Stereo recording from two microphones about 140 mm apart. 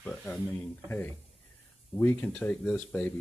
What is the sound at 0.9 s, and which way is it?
Speech, 15° left (ahead or behind).